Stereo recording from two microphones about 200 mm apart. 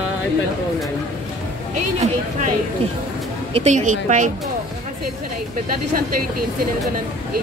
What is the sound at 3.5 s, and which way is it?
Speech, 35° right (ahead or behind).